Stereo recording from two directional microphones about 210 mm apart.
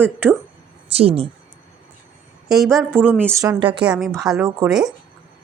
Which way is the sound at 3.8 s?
5° right (ahead or behind).